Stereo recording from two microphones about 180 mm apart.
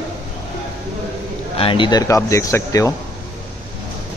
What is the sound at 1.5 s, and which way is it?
A man's voice, 30° left (ahead or behind).